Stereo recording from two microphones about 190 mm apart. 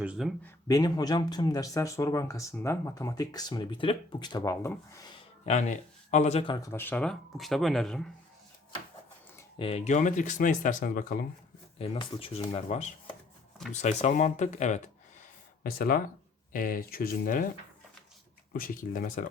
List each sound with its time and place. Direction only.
0.0 s speech: 5° right (ahead or behind)
0.4 s speech: 20° left (ahead or behind)
5.5 s speech: 40° left (ahead or behind); by 8.1 s centre (ahead or behind)
9.6 s speech: 30° left (ahead or behind)
11.8 s speech: 30° left (ahead or behind)
15.6 s speech: 50° left (ahead or behind)
18.5 s speech: 50° left (ahead or behind)